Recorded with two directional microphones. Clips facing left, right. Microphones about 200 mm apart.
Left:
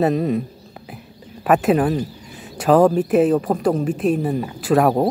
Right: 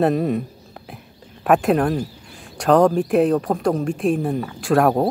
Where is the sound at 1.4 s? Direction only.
Centre (ahead or behind).